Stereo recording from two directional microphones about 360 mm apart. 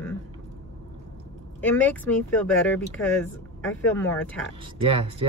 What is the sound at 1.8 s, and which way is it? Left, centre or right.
Speech, centre.